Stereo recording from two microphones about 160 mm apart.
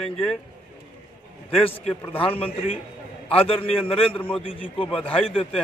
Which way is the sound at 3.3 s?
35° left (ahead or behind).